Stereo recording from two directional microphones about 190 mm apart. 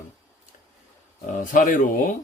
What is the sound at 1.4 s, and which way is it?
Speech, 45° left (ahead or behind).